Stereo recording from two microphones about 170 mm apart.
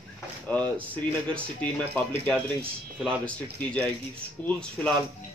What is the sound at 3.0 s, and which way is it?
Speech, 5° left (ahead or behind).